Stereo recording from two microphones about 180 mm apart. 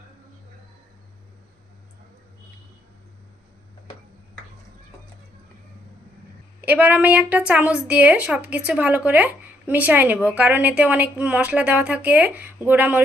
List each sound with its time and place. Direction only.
6.6 s a woman's voice: 10° right (ahead or behind)